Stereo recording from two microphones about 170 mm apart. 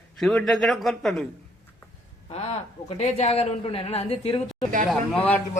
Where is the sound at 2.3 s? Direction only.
40° left (ahead or behind).